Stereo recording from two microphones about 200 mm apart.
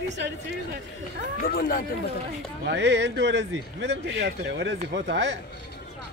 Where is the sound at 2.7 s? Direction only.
60° right (ahead or behind).